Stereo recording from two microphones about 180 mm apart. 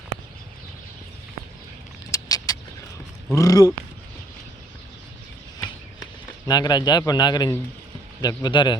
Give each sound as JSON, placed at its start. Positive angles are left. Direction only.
{"t": 2.0, "sound": "vehicle", "side_deg": 20}
{"t": 3.3, "sound": "a man's voice", "side_deg": 20}
{"t": 6.5, "sound": "a man's voice", "side_deg": 25}